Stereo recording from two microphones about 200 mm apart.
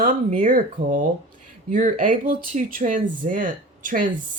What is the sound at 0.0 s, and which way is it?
Speech, 40° right (ahead or behind).